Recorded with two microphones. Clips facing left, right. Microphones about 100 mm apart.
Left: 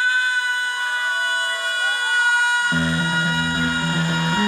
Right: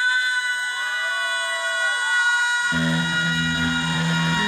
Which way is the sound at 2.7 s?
40° left (ahead or behind).